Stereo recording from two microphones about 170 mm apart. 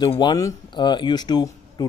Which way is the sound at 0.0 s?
25° left (ahead or behind).